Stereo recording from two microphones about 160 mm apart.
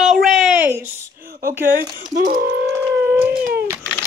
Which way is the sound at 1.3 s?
65° right (ahead or behind).